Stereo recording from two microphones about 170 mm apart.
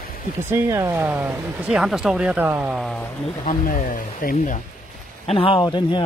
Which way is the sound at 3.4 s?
50° left (ahead or behind).